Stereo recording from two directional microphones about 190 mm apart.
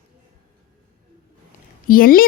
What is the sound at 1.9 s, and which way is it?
Speech, 50° left (ahead or behind).